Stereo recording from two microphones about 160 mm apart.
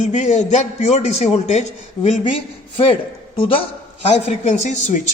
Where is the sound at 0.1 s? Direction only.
45° left (ahead or behind).